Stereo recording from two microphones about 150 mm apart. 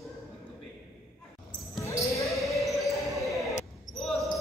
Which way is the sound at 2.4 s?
Centre (ahead or behind).